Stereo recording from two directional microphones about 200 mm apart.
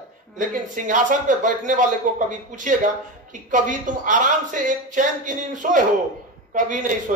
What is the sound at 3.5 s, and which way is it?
Speech, 40° right (ahead or behind).